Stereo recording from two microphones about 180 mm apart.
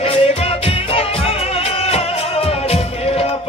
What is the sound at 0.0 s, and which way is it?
Music, 30° left (ahead or behind).